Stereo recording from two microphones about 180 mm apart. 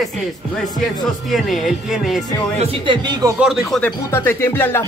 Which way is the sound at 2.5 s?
25° right (ahead or behind).